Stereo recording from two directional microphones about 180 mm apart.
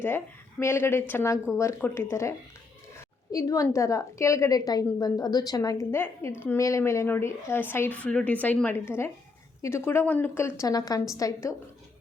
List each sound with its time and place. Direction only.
0.6 s speech: 15° left (ahead or behind)
3.3 s a woman's voice: 20° left (ahead or behind)